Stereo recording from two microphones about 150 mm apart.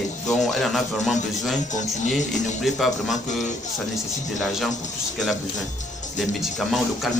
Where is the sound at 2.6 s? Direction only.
Centre (ahead or behind).